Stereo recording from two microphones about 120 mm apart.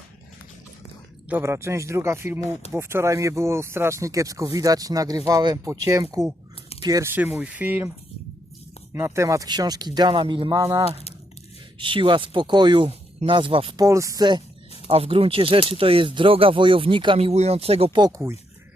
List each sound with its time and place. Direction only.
1.3 s speech: 20° right (ahead or behind)
7.3 s speech: 10° right (ahead or behind); by 10.5 s 45° right (ahead or behind)
10.5 s speech: 30° right (ahead or behind)
11.8 s speech: 45° right (ahead or behind)
13.7 s speech: 25° right (ahead or behind)
14.8 s speech: 55° right (ahead or behind)
17.2 s speech: 60° right (ahead or behind)